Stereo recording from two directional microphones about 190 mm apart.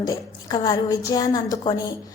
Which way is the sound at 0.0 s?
20° left (ahead or behind).